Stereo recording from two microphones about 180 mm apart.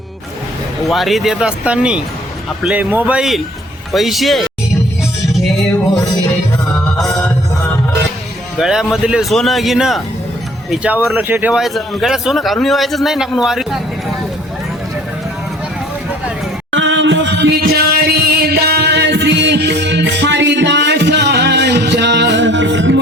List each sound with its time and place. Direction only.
0.9 s a man's voice: centre (ahead or behind)
8.5 s a man's voice: centre (ahead or behind)
16.7 s music: 90° right